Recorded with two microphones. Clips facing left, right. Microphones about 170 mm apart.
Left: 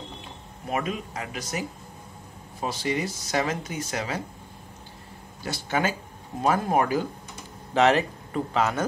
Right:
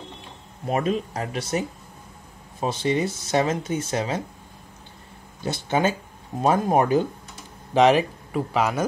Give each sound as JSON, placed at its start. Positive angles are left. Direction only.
{"t": 0.7, "sound": "speech", "side_deg": -35}
{"t": 5.4, "sound": "speech", "side_deg": -20}
{"t": 7.7, "sound": "speech", "side_deg": -15}